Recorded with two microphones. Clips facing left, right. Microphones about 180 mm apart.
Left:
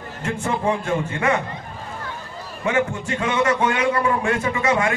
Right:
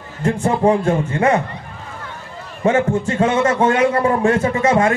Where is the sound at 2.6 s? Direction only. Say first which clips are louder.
Right 6 dB; 40° right (ahead or behind).